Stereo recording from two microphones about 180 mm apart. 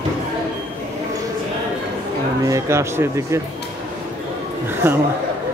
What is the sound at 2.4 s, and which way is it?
Speech, 15° right (ahead or behind).